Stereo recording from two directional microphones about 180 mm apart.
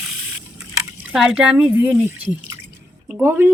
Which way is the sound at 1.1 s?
5° right (ahead or behind).